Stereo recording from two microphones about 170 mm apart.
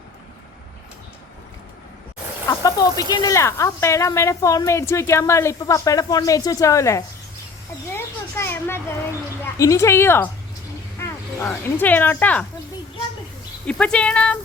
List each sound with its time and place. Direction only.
2.5 s speech: 20° left (ahead or behind)
11.3 s speech: 15° left (ahead or behind)
13.7 s speech: 5° left (ahead or behind)